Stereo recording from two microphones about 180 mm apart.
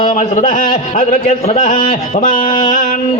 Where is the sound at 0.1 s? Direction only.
45° left (ahead or behind).